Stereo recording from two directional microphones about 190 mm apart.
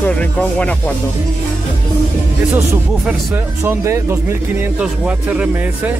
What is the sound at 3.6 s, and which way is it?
Speech, 15° right (ahead or behind).